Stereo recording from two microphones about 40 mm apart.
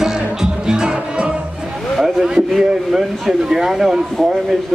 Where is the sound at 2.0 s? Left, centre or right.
Centre.